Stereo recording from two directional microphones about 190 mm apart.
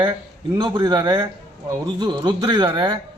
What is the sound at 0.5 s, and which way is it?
A man's voice, 20° right (ahead or behind).